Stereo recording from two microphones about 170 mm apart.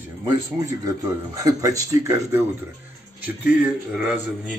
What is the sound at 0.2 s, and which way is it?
A man's voice, 20° right (ahead or behind).